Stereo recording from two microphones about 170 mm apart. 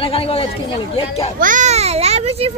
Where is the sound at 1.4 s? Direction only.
50° right (ahead or behind).